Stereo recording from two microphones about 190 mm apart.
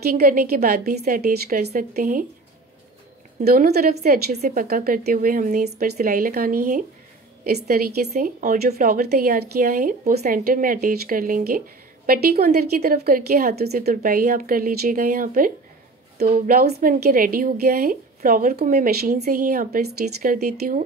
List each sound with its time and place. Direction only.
0.1 s a woman's voice: 50° right (ahead or behind)
3.4 s a woman's voice: 55° right (ahead or behind)
8.4 s speech: 40° right (ahead or behind)
8.7 s a woman's voice: 50° right (ahead or behind)